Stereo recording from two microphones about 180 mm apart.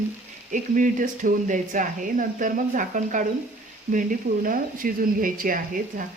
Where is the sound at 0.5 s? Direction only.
45° right (ahead or behind).